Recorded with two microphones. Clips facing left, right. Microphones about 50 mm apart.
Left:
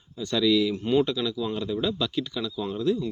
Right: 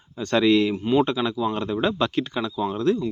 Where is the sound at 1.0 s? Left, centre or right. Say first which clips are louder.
Right 4 dB; right.